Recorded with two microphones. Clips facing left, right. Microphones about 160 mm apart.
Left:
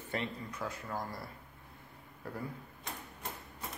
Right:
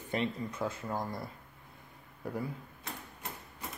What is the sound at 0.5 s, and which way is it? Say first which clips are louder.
Speech: right 4 dB; 25° right (ahead or behind).